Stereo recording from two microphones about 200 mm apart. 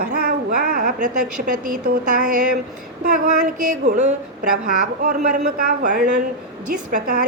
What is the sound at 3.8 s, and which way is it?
A woman's voice, 35° right (ahead or behind).